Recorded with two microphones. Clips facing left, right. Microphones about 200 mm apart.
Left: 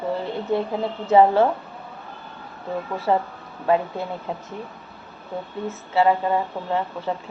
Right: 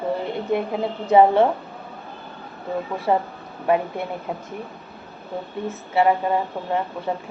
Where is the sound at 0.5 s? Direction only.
15° right (ahead or behind).